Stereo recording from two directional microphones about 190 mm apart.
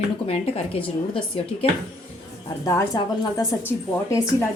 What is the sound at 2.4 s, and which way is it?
A woman's voice, 20° left (ahead or behind).